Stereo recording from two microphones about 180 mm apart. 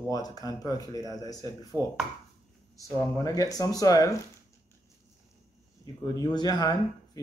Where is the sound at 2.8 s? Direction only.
20° left (ahead or behind).